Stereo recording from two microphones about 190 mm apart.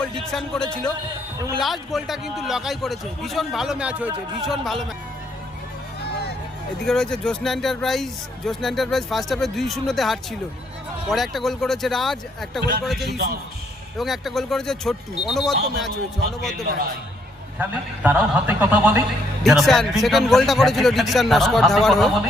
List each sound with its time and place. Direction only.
0.0 s speech: centre (ahead or behind)
6.0 s a sound: 60° left (ahead or behind)
6.8 s speech: 5° left (ahead or behind)
15.5 s a man's voice: 60° right (ahead or behind)
16.4 s speech: centre (ahead or behind)
17.6 s a man's voice: 10° right (ahead or behind)